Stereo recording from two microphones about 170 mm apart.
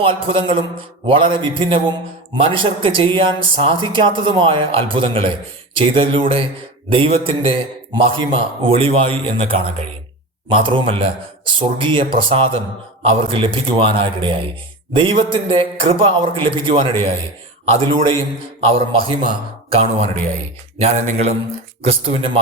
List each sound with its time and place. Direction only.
0.0 s a man's voice: 30° right (ahead or behind)